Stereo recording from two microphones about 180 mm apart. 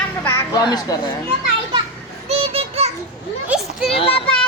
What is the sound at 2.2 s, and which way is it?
Child singing, 35° right (ahead or behind).